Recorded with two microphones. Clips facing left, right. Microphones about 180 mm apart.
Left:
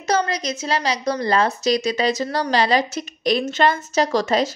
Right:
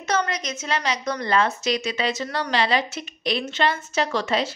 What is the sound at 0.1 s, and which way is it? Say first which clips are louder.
A woman's voice: left 4 dB; 35° left (ahead or behind).